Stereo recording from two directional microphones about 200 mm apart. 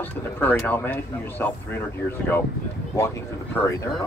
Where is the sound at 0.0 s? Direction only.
10° left (ahead or behind).